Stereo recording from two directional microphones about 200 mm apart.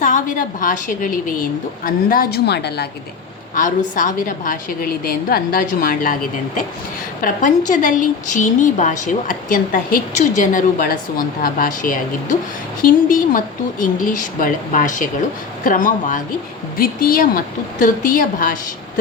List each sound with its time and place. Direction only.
0.0 s a woman's voice: 40° left (ahead or behind); by 2.8 s 55° left (ahead or behind)
3.5 s a woman's voice: 40° left (ahead or behind)
7.2 s a woman's voice: 40° left (ahead or behind)